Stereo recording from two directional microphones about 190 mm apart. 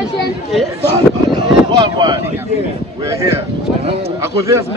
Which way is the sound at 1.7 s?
20° right (ahead or behind).